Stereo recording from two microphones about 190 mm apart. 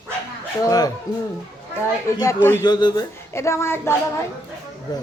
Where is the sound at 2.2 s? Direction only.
15° left (ahead or behind).